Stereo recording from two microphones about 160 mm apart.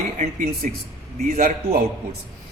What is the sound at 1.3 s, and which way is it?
Speech, 60° right (ahead or behind).